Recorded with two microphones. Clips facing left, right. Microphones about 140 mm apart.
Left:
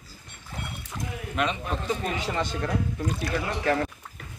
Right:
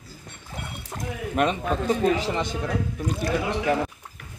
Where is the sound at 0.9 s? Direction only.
45° right (ahead or behind).